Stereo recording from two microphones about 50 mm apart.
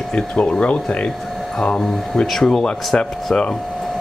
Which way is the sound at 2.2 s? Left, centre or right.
Centre.